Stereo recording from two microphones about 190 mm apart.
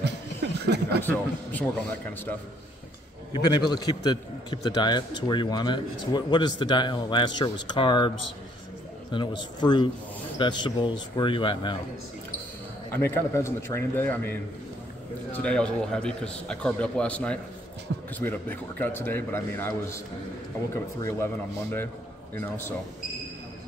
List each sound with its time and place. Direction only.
0.0 s a sound: 65° right (ahead or behind)
1.0 s a man's voice: 10° left (ahead or behind)
3.4 s a man's voice: 20° left (ahead or behind)
9.1 s a man's voice: 25° left (ahead or behind)
12.9 s a man's voice: 15° left (ahead or behind)